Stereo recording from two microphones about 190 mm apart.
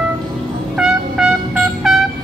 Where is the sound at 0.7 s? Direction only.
5° right (ahead or behind).